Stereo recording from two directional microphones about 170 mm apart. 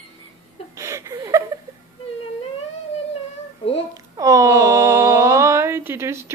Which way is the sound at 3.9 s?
20° right (ahead or behind).